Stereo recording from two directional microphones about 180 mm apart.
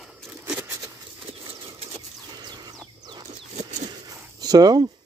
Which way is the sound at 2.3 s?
25° right (ahead or behind).